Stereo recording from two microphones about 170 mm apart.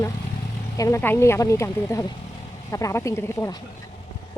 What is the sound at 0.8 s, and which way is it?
Speech, 15° left (ahead or behind).